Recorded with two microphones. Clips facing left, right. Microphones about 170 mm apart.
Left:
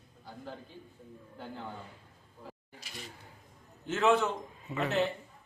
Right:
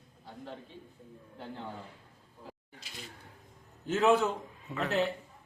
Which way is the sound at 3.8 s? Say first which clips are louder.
Right 1 dB; 10° right (ahead or behind).